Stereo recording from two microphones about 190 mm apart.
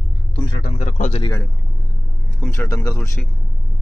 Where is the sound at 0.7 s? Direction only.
40° left (ahead or behind).